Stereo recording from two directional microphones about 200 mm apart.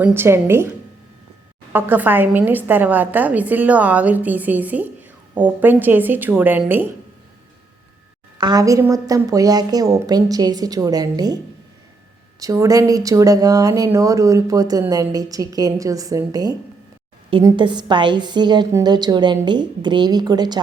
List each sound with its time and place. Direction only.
0.0 s speech: 10° right (ahead or behind)
1.7 s speech: 10° right (ahead or behind)
8.4 s a woman's voice: 20° right (ahead or behind)
12.4 s a woman's voice: 15° right (ahead or behind)